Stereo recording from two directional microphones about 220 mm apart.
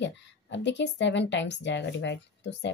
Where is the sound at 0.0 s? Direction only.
55° left (ahead or behind).